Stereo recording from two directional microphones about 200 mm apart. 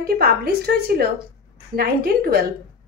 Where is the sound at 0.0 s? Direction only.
50° right (ahead or behind).